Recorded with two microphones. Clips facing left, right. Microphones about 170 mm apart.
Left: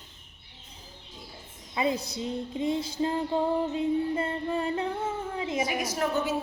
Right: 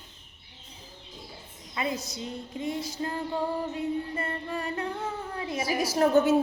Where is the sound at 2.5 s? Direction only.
25° left (ahead or behind).